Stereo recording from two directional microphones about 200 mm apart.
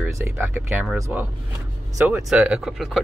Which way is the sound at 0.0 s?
10° right (ahead or behind).